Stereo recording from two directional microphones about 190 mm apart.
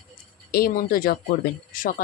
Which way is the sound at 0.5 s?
50° left (ahead or behind).